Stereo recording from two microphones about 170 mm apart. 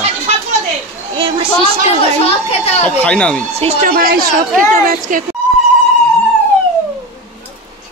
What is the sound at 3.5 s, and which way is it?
Speech, 35° right (ahead or behind).